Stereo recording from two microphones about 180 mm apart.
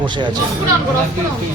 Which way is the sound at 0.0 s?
25° right (ahead or behind).